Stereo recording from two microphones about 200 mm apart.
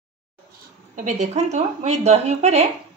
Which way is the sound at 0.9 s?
35° right (ahead or behind).